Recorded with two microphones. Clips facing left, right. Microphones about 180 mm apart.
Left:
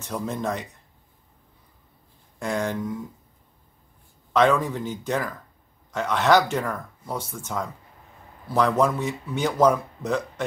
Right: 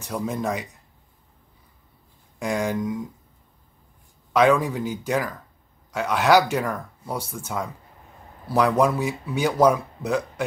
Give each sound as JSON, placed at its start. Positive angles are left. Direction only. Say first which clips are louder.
{"t": 0.0, "sound": "speech", "louder": "right 1 dB", "side_deg": -10}
{"t": 2.3, "sound": "speech", "louder": "right 2 dB", "side_deg": -10}
{"t": 4.3, "sound": "speech", "louder": "right 2 dB", "side_deg": -10}